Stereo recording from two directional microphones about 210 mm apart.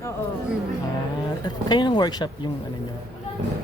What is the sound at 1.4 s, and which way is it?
Speech, 20° left (ahead or behind).